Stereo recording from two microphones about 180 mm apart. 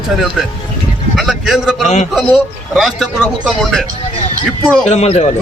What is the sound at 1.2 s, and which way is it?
A man's voice, centre (ahead or behind).